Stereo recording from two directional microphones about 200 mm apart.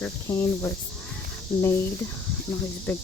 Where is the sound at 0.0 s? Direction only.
10° left (ahead or behind).